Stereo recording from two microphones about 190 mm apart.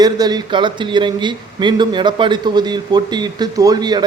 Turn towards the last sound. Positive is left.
turn(degrees=-20)  # may be behind; listen again after turning